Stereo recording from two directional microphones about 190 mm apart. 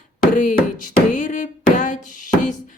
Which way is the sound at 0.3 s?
40° left (ahead or behind).